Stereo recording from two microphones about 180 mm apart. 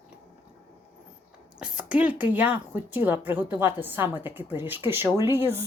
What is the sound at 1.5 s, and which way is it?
A woman's voice, 5° right (ahead or behind).